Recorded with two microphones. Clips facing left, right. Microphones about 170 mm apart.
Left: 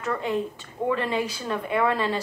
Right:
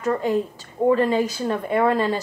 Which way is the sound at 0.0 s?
40° right (ahead or behind).